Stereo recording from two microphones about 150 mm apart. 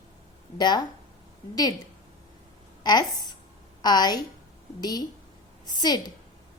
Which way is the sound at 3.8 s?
25° left (ahead or behind).